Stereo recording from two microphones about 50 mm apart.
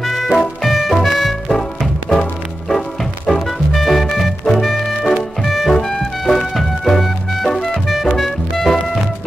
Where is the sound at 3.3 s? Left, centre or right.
Centre.